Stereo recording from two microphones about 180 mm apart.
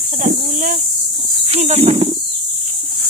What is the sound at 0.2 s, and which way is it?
Cricket, 45° right (ahead or behind).